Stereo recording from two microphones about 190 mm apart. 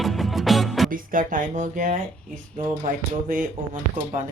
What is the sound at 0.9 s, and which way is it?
Speech, 45° right (ahead or behind).